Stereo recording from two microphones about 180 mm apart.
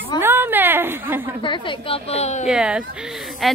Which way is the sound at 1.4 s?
25° left (ahead or behind).